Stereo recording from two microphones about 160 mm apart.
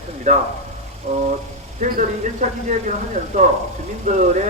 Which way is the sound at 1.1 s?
45° right (ahead or behind).